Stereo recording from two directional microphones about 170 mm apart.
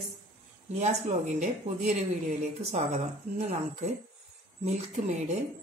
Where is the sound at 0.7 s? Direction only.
45° right (ahead or behind).